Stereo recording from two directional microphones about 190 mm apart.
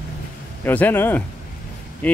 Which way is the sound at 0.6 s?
10° left (ahead or behind).